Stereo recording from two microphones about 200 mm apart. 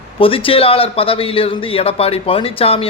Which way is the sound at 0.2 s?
25° left (ahead or behind).